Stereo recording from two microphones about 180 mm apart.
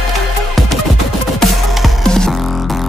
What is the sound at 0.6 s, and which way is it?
Music, centre (ahead or behind).